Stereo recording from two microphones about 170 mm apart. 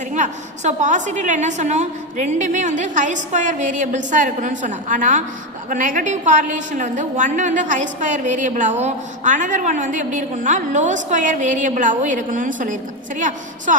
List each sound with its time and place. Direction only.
0.1 s a woman's voice: 45° right (ahead or behind)